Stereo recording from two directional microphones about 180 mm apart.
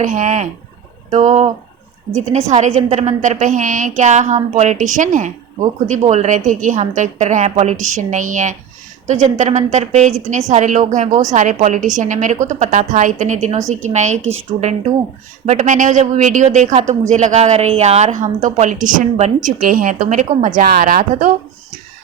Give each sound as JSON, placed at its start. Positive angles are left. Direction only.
{"t": 0.0, "sound": "a woman's voice", "side_deg": -45}
{"t": 15.4, "sound": "a woman's voice", "side_deg": -45}